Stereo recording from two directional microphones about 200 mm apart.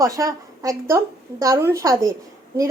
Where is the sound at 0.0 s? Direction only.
15° right (ahead or behind).